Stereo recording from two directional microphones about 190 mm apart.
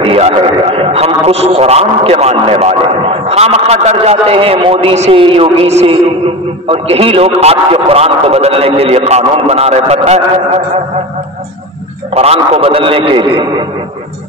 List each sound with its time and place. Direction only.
0.0 s a man's voice: 30° right (ahead or behind)
12.1 s a man's voice: 30° right (ahead or behind)